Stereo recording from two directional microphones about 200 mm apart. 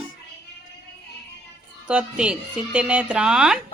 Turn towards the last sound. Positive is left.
turn(degrees=-5)  # may be behind; listen again after turning